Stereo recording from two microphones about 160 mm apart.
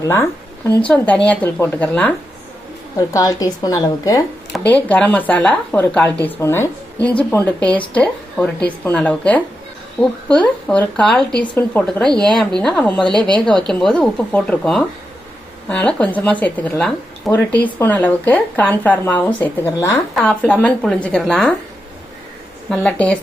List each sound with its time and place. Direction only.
0.0 s a woman's voice: 15° left (ahead or behind)
3.1 s speech: 20° left (ahead or behind)
4.7 s a woman's voice: 10° left (ahead or behind)
22.7 s a woman's voice: 5° left (ahead or behind)